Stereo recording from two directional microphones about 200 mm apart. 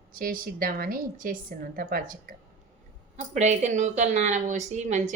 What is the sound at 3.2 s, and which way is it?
A woman's voice, 35° right (ahead or behind).